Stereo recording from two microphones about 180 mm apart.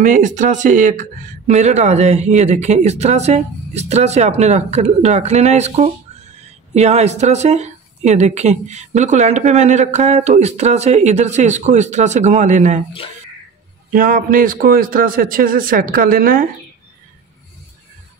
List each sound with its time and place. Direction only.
0.0 s speech: 45° right (ahead or behind)
13.9 s a man's voice: 50° right (ahead or behind)